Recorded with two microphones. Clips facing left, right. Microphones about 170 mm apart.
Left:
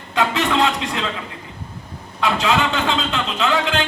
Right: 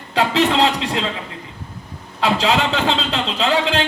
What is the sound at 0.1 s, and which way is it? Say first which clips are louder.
Music: right 2 dB; 35° right (ahead or behind).